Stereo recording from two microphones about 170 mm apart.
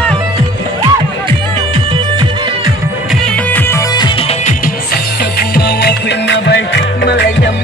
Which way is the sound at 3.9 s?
30° left (ahead or behind).